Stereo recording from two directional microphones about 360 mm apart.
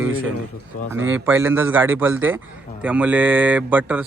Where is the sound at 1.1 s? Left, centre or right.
Centre.